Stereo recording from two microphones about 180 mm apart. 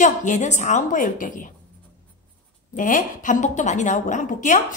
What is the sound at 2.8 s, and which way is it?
A woman's voice, 45° left (ahead or behind).